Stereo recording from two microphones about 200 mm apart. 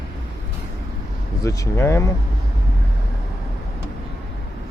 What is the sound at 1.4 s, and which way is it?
Speech, 15° left (ahead or behind).